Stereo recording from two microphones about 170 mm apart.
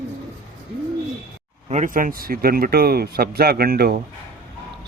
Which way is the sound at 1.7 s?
50° right (ahead or behind).